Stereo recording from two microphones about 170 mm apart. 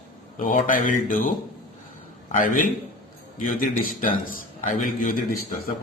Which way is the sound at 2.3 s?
55° left (ahead or behind).